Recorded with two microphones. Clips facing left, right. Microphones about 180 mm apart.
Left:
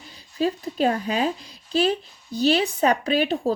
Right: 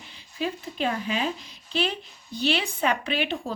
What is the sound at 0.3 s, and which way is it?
Speech, 40° left (ahead or behind).